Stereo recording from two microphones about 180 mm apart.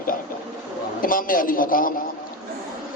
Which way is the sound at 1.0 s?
50° left (ahead or behind).